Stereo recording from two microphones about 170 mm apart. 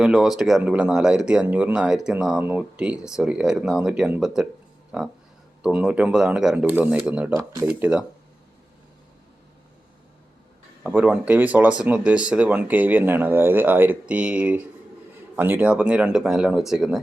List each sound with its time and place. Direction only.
0.0 s speech: centre (ahead or behind)
5.6 s speech: 5° right (ahead or behind)
10.8 s speech: 10° right (ahead or behind)